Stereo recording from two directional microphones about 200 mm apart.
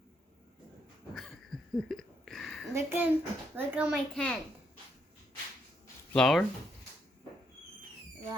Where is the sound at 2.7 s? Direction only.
10° right (ahead or behind).